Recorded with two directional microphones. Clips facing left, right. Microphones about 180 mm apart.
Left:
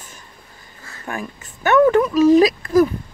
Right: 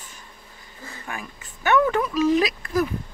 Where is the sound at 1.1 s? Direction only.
45° left (ahead or behind).